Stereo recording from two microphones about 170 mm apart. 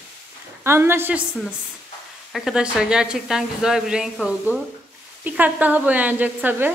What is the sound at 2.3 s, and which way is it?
A woman's voice, 5° right (ahead or behind).